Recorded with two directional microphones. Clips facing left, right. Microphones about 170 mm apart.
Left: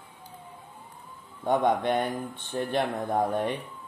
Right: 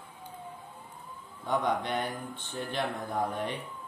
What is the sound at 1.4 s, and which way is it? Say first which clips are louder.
Speech: left 6 dB; 50° left (ahead or behind).